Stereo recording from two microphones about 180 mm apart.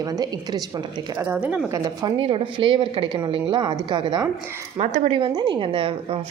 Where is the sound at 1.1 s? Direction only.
10° right (ahead or behind).